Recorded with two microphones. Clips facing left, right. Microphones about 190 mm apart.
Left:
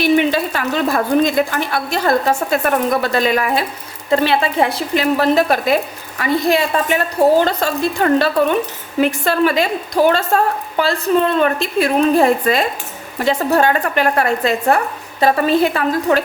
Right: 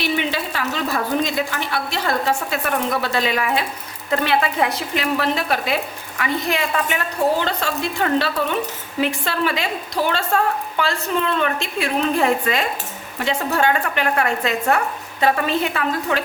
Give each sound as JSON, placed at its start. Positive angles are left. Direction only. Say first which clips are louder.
{"t": 0.0, "sound": "a woman's voice", "louder": "left 8 dB", "side_deg": 50}
{"t": 4.1, "sound": "speech", "louder": "left 4 dB", "side_deg": 30}